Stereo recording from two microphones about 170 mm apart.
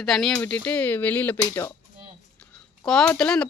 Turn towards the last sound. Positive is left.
turn(degrees=5)  # may be behind; listen again after turning